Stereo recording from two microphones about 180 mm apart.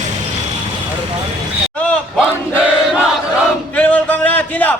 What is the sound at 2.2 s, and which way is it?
Battle cry, 5° right (ahead or behind).